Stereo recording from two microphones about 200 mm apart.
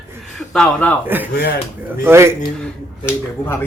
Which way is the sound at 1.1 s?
10° right (ahead or behind).